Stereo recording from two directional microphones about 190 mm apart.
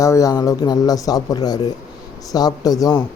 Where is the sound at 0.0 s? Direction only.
15° left (ahead or behind).